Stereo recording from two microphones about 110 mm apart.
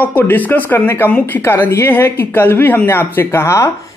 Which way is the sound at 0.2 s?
20° left (ahead or behind).